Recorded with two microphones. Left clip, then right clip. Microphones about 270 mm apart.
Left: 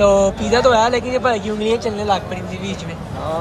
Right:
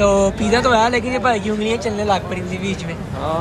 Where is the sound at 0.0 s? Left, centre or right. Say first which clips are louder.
Left 2 dB; centre.